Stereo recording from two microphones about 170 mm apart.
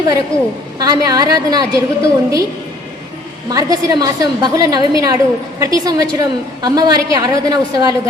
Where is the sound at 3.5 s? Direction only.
20° right (ahead or behind).